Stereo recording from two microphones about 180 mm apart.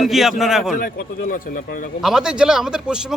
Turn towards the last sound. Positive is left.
turn(degrees=-5)  # may be behind; listen again after turning